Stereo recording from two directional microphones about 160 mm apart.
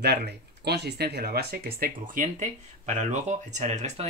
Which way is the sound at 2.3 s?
45° right (ahead or behind).